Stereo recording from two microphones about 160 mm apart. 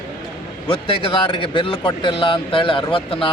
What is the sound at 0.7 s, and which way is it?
Speech, 35° left (ahead or behind).